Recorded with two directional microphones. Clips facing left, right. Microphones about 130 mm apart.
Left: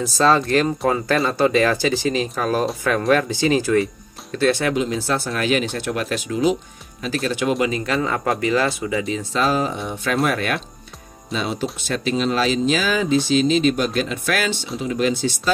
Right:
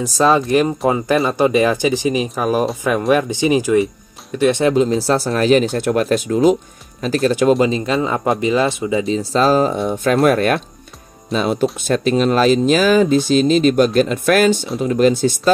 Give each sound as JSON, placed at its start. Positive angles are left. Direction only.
{"t": 0.0, "sound": "speech", "side_deg": -15}
{"t": 4.7, "sound": "speech", "side_deg": -35}